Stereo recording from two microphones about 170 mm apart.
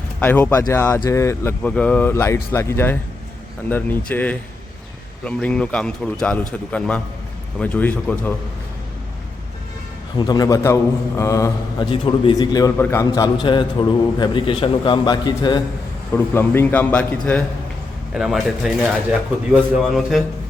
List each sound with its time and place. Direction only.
0.2 s speech: 10° left (ahead or behind)
10.2 s a man's voice: 25° left (ahead or behind)
11.9 s a man's voice: 30° left (ahead or behind)
16.1 s speech: 15° left (ahead or behind)